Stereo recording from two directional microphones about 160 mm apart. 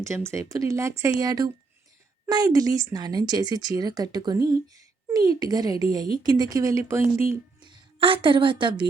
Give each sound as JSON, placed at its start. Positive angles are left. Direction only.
{"t": 0.3, "sound": "speech", "side_deg": -20}
{"t": 7.6, "sound": "a woman's voice", "side_deg": -30}